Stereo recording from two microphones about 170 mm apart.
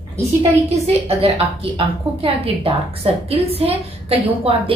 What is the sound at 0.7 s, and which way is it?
A woman's voice, 35° right (ahead or behind).